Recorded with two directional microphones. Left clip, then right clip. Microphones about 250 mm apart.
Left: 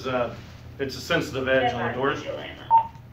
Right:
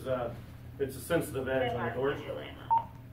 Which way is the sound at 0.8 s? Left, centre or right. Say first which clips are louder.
Left 6 dB; centre.